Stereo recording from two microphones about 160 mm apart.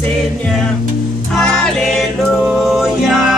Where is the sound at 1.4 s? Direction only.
Centre (ahead or behind).